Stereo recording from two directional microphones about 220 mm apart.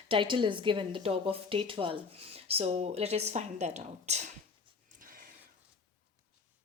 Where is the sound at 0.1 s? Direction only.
20° right (ahead or behind).